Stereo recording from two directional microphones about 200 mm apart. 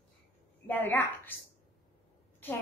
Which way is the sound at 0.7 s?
10° left (ahead or behind).